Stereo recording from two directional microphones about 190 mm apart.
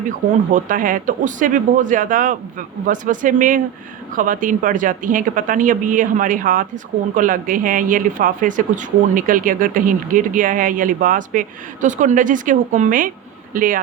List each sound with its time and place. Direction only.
0.5 s speech: 45° right (ahead or behind)